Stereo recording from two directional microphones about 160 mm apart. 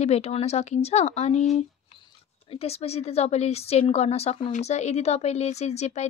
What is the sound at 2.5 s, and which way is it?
A woman's voice, 40° left (ahead or behind).